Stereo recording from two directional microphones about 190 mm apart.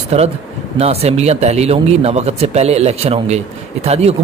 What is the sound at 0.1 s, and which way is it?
Speech, 35° right (ahead or behind).